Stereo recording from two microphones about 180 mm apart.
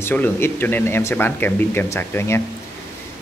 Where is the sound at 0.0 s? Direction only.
10° left (ahead or behind).